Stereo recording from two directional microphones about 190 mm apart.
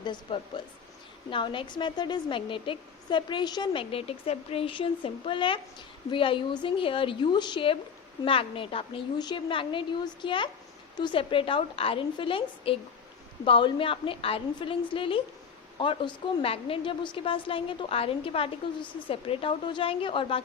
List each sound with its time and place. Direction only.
0.0 s a woman's voice: 25° left (ahead or behind)